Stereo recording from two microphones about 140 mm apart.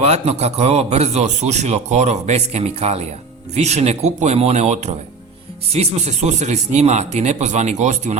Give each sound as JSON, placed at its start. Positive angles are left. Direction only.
{"t": 0.0, "sound": "a man's voice", "side_deg": -50}